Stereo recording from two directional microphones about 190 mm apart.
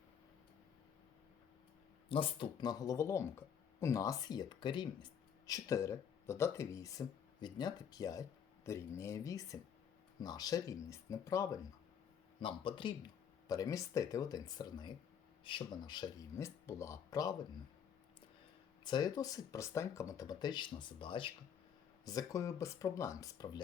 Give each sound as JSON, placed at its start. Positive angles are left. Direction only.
{"t": 2.0, "sound": "speech", "side_deg": 25}
{"t": 12.4, "sound": "speech", "side_deg": 25}
{"t": 18.9, "sound": "speech", "side_deg": 20}